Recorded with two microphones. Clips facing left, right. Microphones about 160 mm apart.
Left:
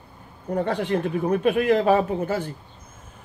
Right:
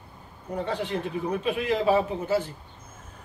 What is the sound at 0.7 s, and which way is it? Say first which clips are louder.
A man's voice: left 4 dB; 60° left (ahead or behind).